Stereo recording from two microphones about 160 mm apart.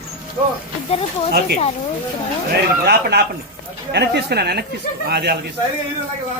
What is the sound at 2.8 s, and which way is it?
Speech, 90° right.